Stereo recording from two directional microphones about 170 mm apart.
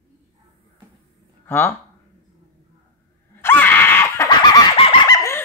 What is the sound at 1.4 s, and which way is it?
Speech, 10° left (ahead or behind).